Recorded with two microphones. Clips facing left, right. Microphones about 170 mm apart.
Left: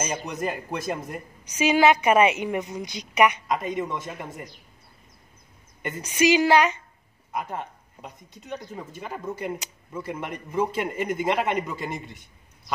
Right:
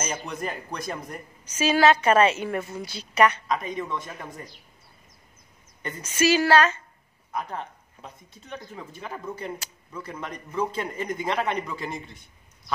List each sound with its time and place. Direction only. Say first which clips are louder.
0.0 s a man's voice: left 3 dB; 15° left (ahead or behind)
5.9 s a man's voice: left 2 dB; 15° left (ahead or behind)